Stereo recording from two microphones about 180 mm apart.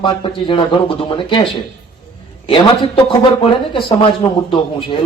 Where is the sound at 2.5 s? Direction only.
30° left (ahead or behind).